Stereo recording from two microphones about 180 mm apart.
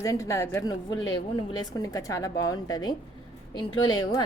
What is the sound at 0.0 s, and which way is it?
A woman's voice, 15° left (ahead or behind).